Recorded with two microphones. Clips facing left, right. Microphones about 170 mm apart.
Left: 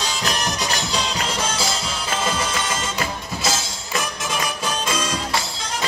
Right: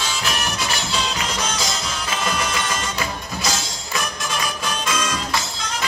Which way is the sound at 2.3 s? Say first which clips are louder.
Even; 25° left (ahead or behind).